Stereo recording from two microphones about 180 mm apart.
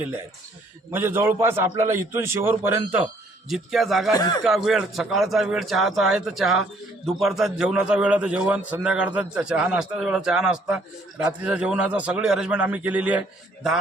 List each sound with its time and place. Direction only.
0.9 s a man's voice: 15° right (ahead or behind)
3.5 s a man's voice: centre (ahead or behind)
4.1 s speech: 20° left (ahead or behind)
4.4 s a man's voice: centre (ahead or behind)